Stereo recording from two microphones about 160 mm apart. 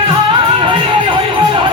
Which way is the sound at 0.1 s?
35° right (ahead or behind).